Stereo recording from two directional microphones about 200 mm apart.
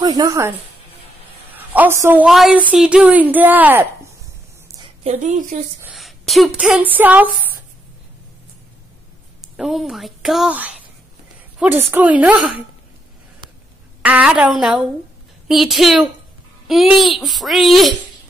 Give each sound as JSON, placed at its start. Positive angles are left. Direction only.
{"t": 0.0, "sound": "a woman's voice", "side_deg": -20}
{"t": 1.6, "sound": "a woman's voice", "side_deg": -10}
{"t": 5.0, "sound": "a woman's voice", "side_deg": -35}
{"t": 5.8, "sound": "speech", "side_deg": -5}
{"t": 9.4, "sound": "a woman's voice", "side_deg": 0}
{"t": 14.0, "sound": "a child's voice", "side_deg": -5}